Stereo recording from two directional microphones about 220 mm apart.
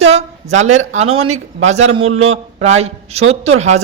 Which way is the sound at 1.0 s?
75° right (ahead or behind).